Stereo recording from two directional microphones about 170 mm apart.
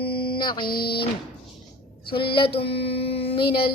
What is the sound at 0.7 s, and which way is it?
Mantra, 65° left (ahead or behind).